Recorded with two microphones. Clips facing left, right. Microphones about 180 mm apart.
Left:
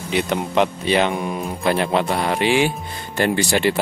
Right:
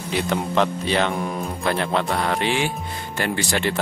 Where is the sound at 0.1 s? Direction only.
10° left (ahead or behind).